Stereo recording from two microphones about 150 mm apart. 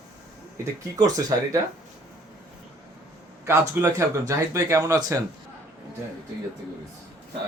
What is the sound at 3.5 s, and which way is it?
Speech, 20° right (ahead or behind).